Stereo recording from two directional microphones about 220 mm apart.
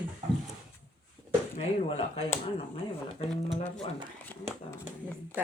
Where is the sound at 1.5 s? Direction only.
30° left (ahead or behind).